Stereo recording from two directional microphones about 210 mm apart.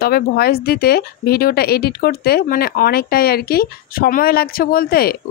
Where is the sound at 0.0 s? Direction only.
45° left (ahead or behind).